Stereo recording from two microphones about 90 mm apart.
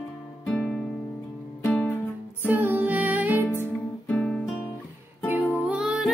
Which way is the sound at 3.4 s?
25° left (ahead or behind).